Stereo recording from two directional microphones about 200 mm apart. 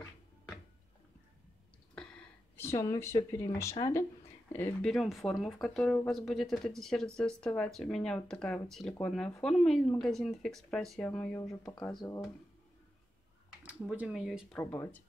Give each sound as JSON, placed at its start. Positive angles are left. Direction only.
{"t": 2.0, "sound": "a sound", "side_deg": 5}
{"t": 3.7, "sound": "speech", "side_deg": 15}
{"t": 13.6, "sound": "speech", "side_deg": -5}
{"t": 14.6, "sound": "speech", "side_deg": 10}